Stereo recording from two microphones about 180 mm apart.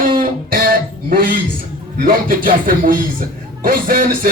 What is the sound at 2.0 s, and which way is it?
A man's voice, 50° right (ahead or behind).